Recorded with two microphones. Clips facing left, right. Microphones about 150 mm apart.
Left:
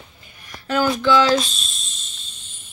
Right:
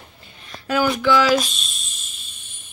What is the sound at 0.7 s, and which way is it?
Speech, 5° right (ahead or behind).